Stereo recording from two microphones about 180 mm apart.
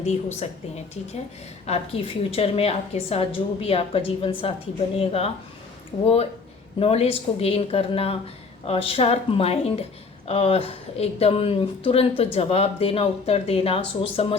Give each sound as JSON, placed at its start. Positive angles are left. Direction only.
{"t": 0.0, "sound": "a woman's voice", "side_deg": 40}
{"t": 1.6, "sound": "a woman's voice", "side_deg": 35}
{"t": 6.7, "sound": "a woman's voice", "side_deg": 35}